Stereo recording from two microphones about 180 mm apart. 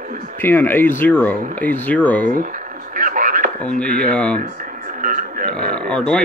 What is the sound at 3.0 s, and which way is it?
Radio, 50° right (ahead or behind).